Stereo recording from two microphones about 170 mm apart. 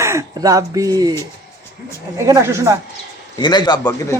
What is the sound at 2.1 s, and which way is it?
Speech, 15° right (ahead or behind).